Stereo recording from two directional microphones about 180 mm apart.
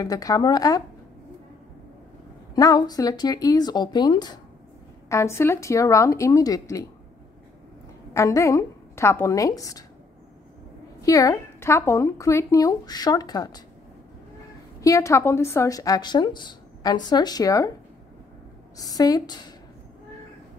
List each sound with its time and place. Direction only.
0.0 s a woman's voice: 20° left (ahead or behind)
2.5 s a woman's voice: 20° left (ahead or behind)
8.1 s a woman's voice: 15° left (ahead or behind)
11.0 s a woman's voice: 20° left (ahead or behind)
14.8 s a woman's voice: 15° left (ahead or behind)
18.8 s a woman's voice: 20° left (ahead or behind)